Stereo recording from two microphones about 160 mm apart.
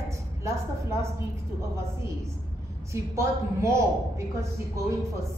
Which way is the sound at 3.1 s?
20° right (ahead or behind).